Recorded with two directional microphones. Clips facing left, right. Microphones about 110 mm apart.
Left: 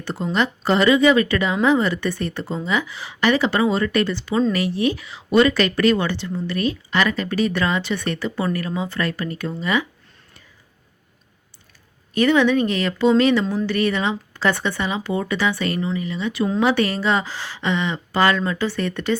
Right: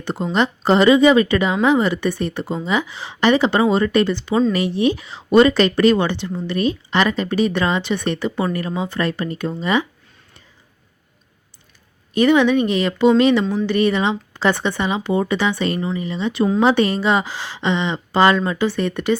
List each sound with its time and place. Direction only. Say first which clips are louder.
0.0 s speech: right 2 dB; 20° right (ahead or behind)
12.1 s speech: right 2 dB; 20° right (ahead or behind)